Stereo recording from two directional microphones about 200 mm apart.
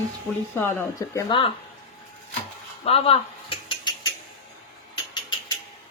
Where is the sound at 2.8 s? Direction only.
30° left (ahead or behind).